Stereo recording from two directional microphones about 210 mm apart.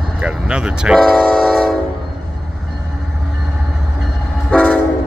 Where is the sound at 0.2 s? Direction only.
5° right (ahead or behind).